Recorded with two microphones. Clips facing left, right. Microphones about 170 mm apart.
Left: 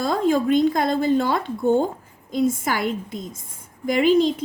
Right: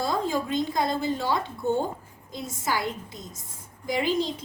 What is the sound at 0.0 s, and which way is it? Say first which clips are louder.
A woman's voice: left 7 dB; 55° left (ahead or behind).